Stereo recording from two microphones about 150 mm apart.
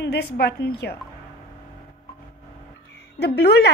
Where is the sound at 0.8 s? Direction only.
90° left.